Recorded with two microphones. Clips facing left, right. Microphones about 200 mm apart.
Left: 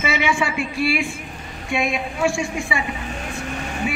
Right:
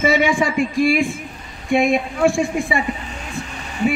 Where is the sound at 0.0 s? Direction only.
45° right (ahead or behind).